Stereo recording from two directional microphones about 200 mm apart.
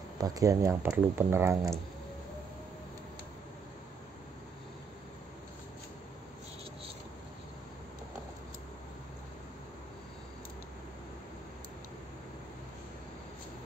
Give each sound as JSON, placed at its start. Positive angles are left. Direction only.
{"t": 0.2, "sound": "speech", "side_deg": -15}